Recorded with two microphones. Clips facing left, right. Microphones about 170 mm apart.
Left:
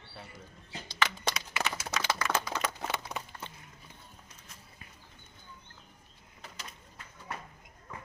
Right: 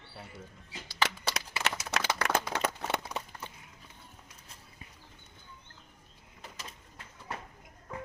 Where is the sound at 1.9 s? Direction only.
70° right (ahead or behind).